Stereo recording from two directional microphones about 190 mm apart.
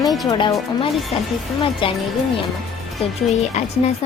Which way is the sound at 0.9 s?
Centre (ahead or behind).